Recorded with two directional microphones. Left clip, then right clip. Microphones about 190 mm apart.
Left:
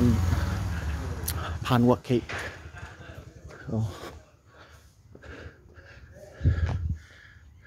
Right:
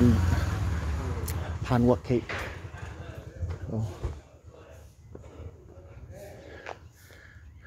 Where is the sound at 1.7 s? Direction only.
15° left (ahead or behind).